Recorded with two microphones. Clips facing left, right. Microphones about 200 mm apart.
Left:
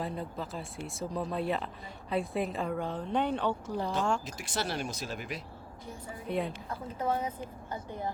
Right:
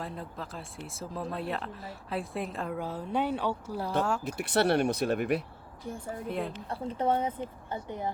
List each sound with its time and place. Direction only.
0.0 s speech: centre (ahead or behind)
4.2 s speech: 60° right (ahead or behind)
6.2 s speech: centre (ahead or behind)
6.7 s a woman's voice: 30° right (ahead or behind)
7.7 s speech: 20° right (ahead or behind)